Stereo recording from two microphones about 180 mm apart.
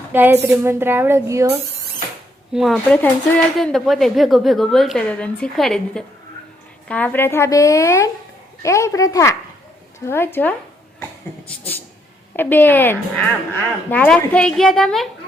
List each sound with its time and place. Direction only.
0.1 s a woman's voice: 10° right (ahead or behind)
2.5 s a woman's voice: centre (ahead or behind)